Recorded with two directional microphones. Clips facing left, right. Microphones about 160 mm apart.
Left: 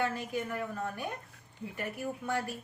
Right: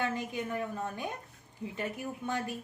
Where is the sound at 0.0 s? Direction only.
20° right (ahead or behind).